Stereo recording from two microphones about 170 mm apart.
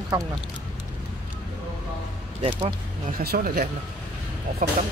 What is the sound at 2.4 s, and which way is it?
Speech, 45° right (ahead or behind).